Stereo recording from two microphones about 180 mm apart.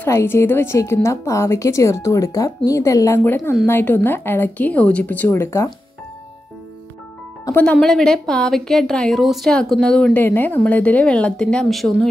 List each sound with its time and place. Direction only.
0.0 s a woman's voice: 15° left (ahead or behind)
7.4 s speech: 10° left (ahead or behind)